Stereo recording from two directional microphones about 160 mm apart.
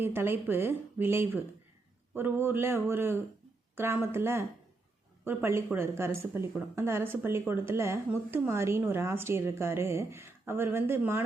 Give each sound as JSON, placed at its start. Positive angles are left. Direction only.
{"t": 0.0, "sound": "speech", "side_deg": -15}